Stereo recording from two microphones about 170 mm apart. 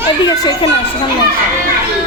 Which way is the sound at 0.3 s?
25° left (ahead or behind).